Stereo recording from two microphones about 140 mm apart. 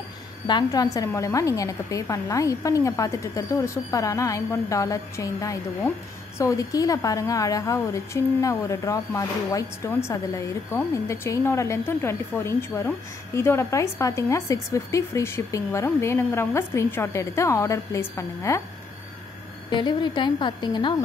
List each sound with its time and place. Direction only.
0.5 s a woman's voice: 30° left (ahead or behind)
19.7 s a woman's voice: 35° left (ahead or behind)